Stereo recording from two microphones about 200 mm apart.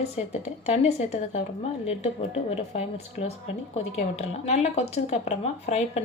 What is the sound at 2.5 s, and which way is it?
A woman's voice, 30° left (ahead or behind).